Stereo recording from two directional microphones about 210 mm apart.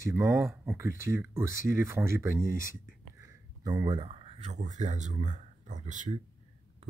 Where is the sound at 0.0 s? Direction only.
15° right (ahead or behind).